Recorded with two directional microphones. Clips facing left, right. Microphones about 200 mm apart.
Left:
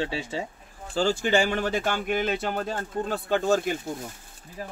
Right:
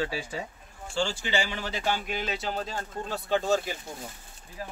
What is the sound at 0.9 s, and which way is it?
Speech, 45° left (ahead or behind).